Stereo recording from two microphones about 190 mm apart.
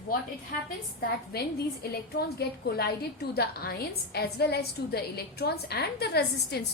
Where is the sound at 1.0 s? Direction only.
55° left (ahead or behind).